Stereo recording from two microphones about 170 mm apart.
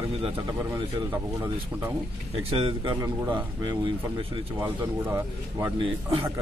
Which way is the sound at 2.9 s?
20° right (ahead or behind).